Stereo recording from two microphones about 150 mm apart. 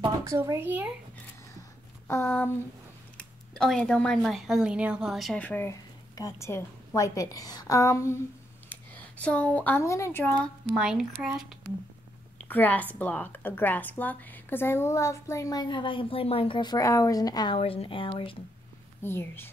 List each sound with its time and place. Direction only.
0.2 s speech: 20° right (ahead or behind)
2.0 s a woman's voice: 15° left (ahead or behind)
3.2 s speech: 5° left (ahead or behind)
5.4 s a woman's voice: 15° left (ahead or behind)
10.8 s speech: 5° right (ahead or behind)
12.4 s a woman's voice: 10° left (ahead or behind)
17.6 s speech: 40° left (ahead or behind)
19.0 s a woman's voice: 15° left (ahead or behind)